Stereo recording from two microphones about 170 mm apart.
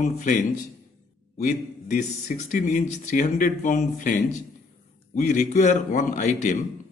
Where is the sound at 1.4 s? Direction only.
50° left (ahead or behind).